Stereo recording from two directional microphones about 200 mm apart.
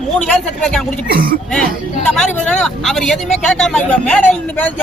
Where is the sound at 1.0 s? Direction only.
45° right (ahead or behind).